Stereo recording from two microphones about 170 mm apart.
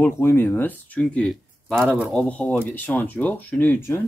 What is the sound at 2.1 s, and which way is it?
Speech, 5° left (ahead or behind).